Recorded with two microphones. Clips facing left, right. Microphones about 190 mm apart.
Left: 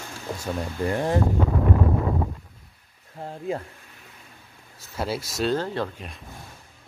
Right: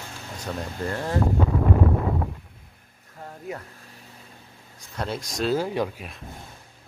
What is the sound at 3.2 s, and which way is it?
Speech, 25° left (ahead or behind).